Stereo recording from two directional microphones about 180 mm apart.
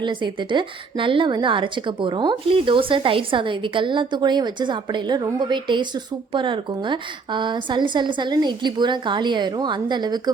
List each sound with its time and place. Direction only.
0.0 s a woman's voice: 25° right (ahead or behind)